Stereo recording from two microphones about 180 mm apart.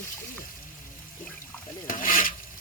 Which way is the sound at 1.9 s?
50° left (ahead or behind).